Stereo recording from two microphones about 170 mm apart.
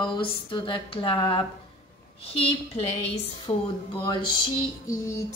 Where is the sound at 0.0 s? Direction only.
30° left (ahead or behind).